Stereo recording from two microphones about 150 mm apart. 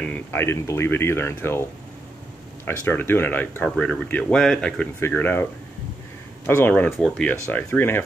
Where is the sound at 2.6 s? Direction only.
15° left (ahead or behind).